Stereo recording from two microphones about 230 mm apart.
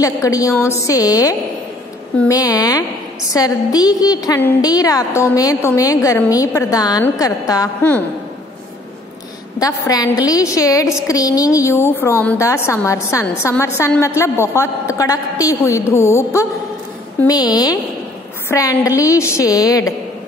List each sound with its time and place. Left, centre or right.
0.0 s a woman's voice: centre
9.6 s a woman's voice: centre